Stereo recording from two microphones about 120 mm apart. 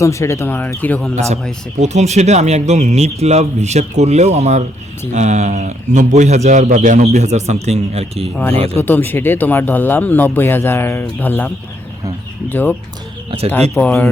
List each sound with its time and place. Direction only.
0.0 s speech: 25° left (ahead or behind)
1.8 s a man's voice: 70° right (ahead or behind)
8.8 s speech: 15° left (ahead or behind)